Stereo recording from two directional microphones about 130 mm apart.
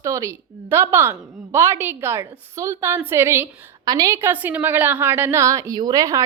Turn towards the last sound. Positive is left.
turn(degrees=-25)  # may be behind; listen again after turning